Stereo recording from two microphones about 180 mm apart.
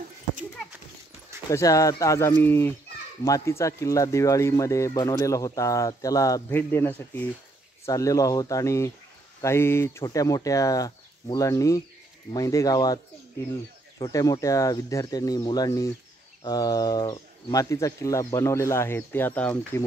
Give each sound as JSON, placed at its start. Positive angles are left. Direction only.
{"t": 1.5, "sound": "speech", "side_deg": 20}